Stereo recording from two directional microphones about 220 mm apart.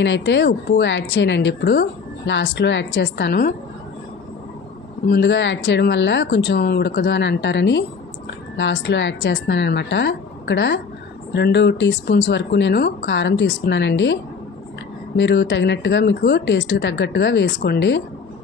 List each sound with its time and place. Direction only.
0.0 s a woman's voice: 55° left (ahead or behind)
5.1 s a woman's voice: 50° left (ahead or behind)
15.1 s a woman's voice: 50° left (ahead or behind)